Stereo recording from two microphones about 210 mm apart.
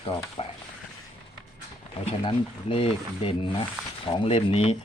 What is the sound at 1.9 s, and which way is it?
Speech, 25° left (ahead or behind).